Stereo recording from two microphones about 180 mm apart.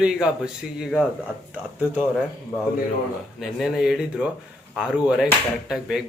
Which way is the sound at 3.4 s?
Centre (ahead or behind).